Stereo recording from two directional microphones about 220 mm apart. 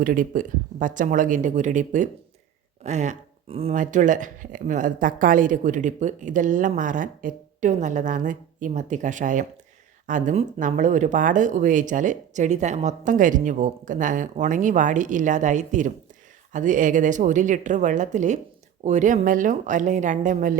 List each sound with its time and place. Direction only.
0.0 s speech: 40° right (ahead or behind)